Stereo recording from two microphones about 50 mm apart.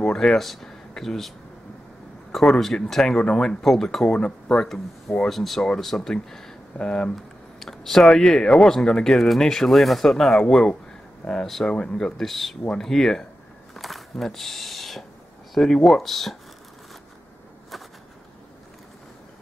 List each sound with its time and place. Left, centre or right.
0.0 s speech: centre
2.3 s speech: centre
3.6 s speech: centre
4.1 s speech: centre
5.3 s speech: centre
6.8 s speech: centre
7.6 s speech: centre
11.7 s speech: centre
12.2 s speech: centre
13.7 s a sound: centre
15.5 s speech: centre